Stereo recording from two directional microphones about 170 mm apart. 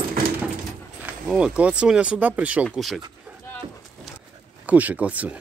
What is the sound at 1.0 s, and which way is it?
Speech, 10° right (ahead or behind).